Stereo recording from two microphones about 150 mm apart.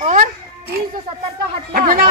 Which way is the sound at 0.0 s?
55° right (ahead or behind).